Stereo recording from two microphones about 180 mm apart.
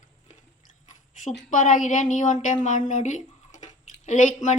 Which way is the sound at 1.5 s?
45° left (ahead or behind).